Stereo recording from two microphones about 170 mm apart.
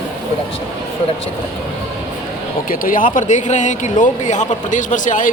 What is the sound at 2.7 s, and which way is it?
Speech, 55° left (ahead or behind).